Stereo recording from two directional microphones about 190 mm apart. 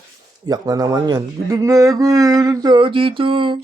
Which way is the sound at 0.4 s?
20° right (ahead or behind).